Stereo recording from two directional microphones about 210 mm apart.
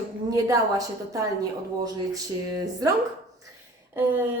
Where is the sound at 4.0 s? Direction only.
10° right (ahead or behind).